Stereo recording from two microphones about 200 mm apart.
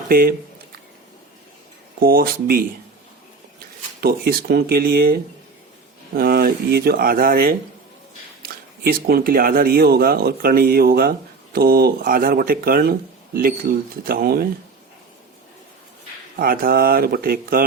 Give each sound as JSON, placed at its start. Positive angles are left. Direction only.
{"t": 0.1, "sound": "speech", "side_deg": -45}
{"t": 2.0, "sound": "speech", "side_deg": -45}
{"t": 4.0, "sound": "speech", "side_deg": -50}
{"t": 6.1, "sound": "speech", "side_deg": -50}
{"t": 8.8, "sound": "speech", "side_deg": -50}
{"t": 16.4, "sound": "speech", "side_deg": -45}